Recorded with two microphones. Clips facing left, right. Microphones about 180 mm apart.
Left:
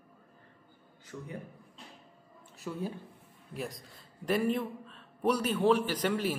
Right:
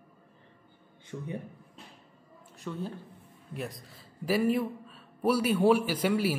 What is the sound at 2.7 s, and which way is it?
A man's voice, 10° left (ahead or behind).